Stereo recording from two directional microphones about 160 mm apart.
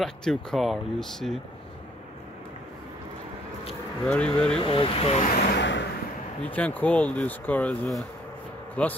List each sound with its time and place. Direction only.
0.0 s speech: 5° left (ahead or behind)
4.0 s speech: 5° left (ahead or behind)
4.6 s speech: 35° left (ahead or behind)
5.2 s vehicle: 80° left
6.4 s speech: 10° left (ahead or behind)